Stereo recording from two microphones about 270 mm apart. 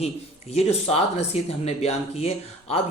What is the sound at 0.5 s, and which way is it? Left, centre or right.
Speech, left.